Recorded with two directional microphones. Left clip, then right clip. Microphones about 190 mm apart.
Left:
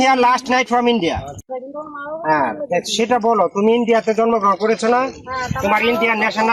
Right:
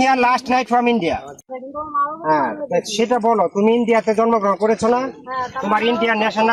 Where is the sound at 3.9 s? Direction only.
35° right (ahead or behind).